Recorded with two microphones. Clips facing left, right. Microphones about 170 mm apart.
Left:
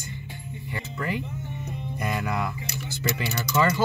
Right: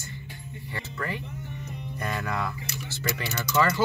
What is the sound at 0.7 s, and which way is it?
Music, 15° left (ahead or behind).